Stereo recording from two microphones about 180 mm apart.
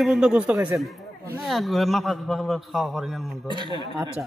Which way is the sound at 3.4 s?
25° right (ahead or behind).